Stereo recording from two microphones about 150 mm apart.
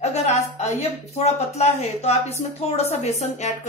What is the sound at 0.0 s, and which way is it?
Speech, 45° left (ahead or behind).